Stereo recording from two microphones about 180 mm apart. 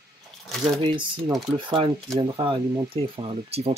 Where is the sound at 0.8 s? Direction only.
30° right (ahead or behind).